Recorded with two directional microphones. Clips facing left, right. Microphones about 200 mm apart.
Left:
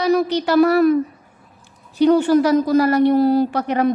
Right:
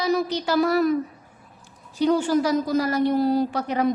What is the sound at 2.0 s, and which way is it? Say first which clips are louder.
A woman's voice: left 6 dB; 65° left (ahead or behind).